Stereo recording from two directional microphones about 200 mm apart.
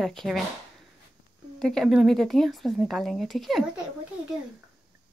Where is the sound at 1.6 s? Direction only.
Centre (ahead or behind).